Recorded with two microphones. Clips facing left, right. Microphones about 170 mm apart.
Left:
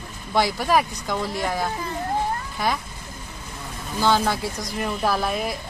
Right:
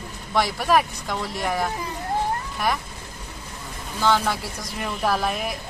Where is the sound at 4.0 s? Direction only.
5° left (ahead or behind).